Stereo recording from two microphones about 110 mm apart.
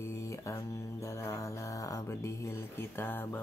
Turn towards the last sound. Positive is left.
turn(degrees=20)  # may be behind; listen again after turning